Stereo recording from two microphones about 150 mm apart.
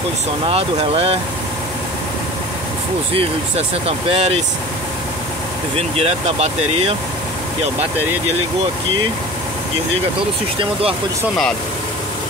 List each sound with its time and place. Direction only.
0.5 s speech: 40° right (ahead or behind)
3.1 s speech: 40° right (ahead or behind)
5.8 s speech: 45° right (ahead or behind)
10.6 s speech: 40° right (ahead or behind)